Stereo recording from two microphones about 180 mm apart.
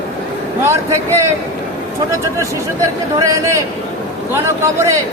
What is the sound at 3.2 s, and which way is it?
A man's voice, 15° right (ahead or behind).